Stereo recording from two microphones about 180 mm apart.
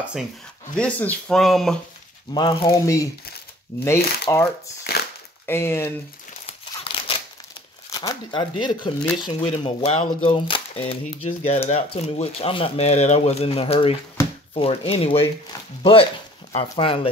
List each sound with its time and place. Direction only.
0.0 s speech: 5° right (ahead or behind)
0.7 s speech: 10° left (ahead or behind)
2.3 s speech: 25° left (ahead or behind)
4.9 s a sound: 60° left (ahead or behind)
5.5 s speech: 15° left (ahead or behind)
6.4 s crumpling: 35° left (ahead or behind)
7.9 s speech: 20° left (ahead or behind)